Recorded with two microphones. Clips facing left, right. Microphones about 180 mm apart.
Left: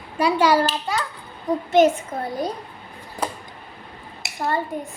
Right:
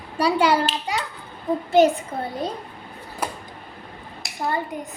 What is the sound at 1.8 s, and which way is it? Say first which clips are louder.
Speech: even; 25° right (ahead or behind).